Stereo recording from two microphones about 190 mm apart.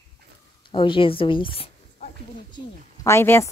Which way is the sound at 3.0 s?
15° left (ahead or behind).